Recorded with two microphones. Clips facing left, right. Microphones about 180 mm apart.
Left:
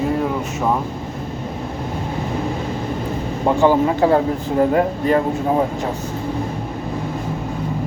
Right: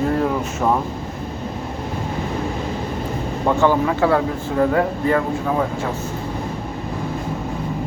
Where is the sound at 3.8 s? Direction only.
35° left (ahead or behind).